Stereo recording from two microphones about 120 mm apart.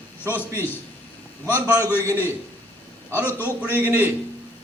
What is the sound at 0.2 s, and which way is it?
Speech, 15° left (ahead or behind).